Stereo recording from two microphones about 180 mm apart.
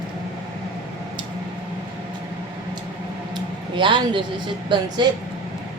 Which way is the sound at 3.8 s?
25° right (ahead or behind).